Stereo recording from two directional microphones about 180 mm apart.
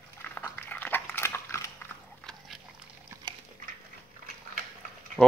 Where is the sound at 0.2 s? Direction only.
10° left (ahead or behind).